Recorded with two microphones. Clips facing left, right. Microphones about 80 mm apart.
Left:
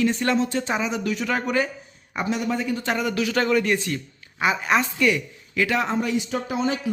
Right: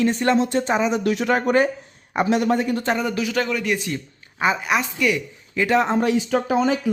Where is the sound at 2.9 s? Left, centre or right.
Right.